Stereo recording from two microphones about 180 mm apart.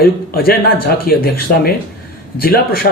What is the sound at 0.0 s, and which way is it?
Speech, 60° left (ahead or behind).